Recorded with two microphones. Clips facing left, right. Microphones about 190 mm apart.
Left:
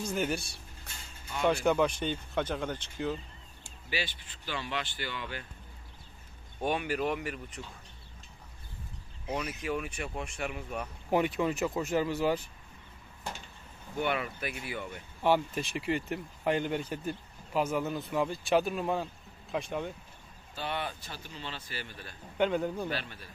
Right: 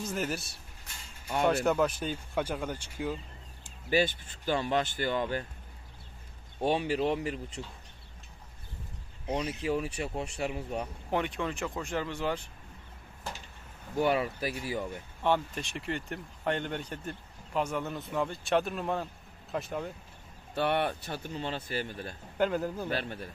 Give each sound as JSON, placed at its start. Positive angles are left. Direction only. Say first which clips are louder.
{"t": 0.0, "sound": "speech", "louder": "left 2 dB", "side_deg": -5}
{"t": 3.9, "sound": "speech", "louder": "right 10 dB", "side_deg": -45}
{"t": 6.6, "sound": "speech", "louder": "right 3 dB", "side_deg": -30}
{"t": 9.3, "sound": "speech", "louder": "right 3 dB", "side_deg": -30}
{"t": 11.1, "sound": "speech", "louder": "left 5 dB", "side_deg": 5}
{"t": 13.9, "sound": "speech", "louder": "right 4 dB", "side_deg": -35}
{"t": 15.2, "sound": "speech", "louder": "left 2 dB", "side_deg": 5}
{"t": 20.5, "sound": "speech", "louder": "right 7 dB", "side_deg": -65}
{"t": 22.4, "sound": "speech", "louder": "even", "side_deg": -5}
{"t": 22.8, "sound": "speech", "louder": "right 3 dB", "side_deg": -50}